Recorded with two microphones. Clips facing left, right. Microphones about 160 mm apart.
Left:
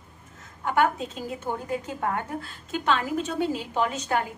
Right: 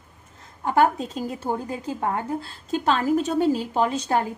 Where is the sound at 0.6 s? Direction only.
35° right (ahead or behind).